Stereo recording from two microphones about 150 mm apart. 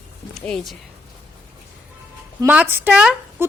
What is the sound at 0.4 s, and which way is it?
Speech, centre (ahead or behind).